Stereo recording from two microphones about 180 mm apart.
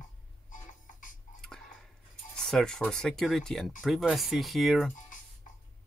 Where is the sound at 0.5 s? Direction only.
45° left (ahead or behind).